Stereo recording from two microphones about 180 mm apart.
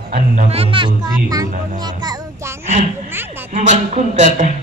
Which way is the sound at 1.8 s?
25° right (ahead or behind).